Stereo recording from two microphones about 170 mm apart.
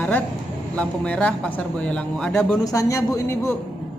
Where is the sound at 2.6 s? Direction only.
20° left (ahead or behind).